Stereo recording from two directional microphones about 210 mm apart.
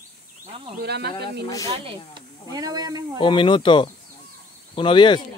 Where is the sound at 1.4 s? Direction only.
15° left (ahead or behind).